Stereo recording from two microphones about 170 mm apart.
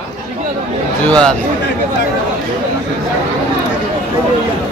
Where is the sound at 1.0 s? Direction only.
5° left (ahead or behind).